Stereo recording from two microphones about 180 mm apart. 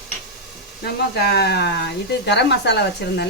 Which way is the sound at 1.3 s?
65° left (ahead or behind).